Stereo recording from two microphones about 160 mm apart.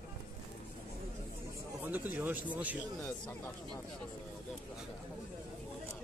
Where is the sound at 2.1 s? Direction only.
10° right (ahead or behind).